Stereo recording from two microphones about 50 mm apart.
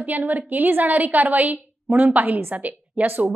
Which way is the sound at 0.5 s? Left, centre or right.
Right.